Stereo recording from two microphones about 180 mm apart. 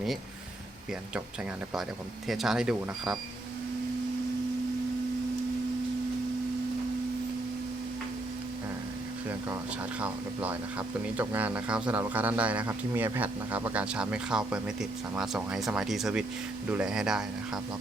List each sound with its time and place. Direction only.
2.2 s speech: centre (ahead or behind)
10.0 s speech: 10° right (ahead or behind)